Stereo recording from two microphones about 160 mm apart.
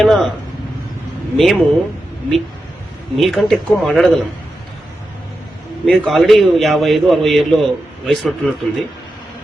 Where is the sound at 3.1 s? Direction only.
Centre (ahead or behind).